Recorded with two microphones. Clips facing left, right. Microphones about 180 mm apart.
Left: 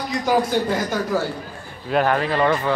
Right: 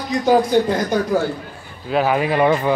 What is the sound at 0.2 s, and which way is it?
A man's voice, 20° right (ahead or behind).